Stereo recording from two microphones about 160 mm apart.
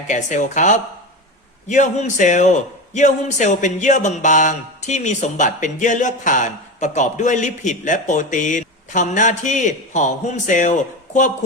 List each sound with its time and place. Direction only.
0.1 s a man's voice: 50° left (ahead or behind)